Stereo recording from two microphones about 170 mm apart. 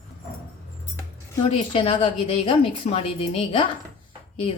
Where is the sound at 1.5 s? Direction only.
35° left (ahead or behind).